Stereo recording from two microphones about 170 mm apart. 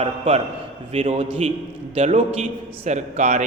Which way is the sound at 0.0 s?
35° right (ahead or behind).